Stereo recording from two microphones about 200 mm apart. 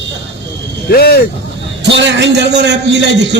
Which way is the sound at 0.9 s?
50° left (ahead or behind).